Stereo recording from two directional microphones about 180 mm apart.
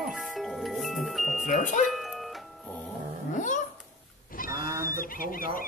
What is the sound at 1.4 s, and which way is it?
Speech, 45° left (ahead or behind).